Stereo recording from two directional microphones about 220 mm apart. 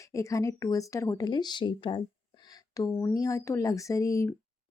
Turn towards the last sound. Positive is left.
turn(degrees=15)  # may be behind; listen again after turning